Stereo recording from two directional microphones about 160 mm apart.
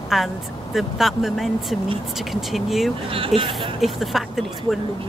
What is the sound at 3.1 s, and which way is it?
Speech, 35° right (ahead or behind).